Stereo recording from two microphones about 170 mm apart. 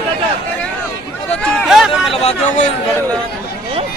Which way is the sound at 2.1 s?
35° left (ahead or behind).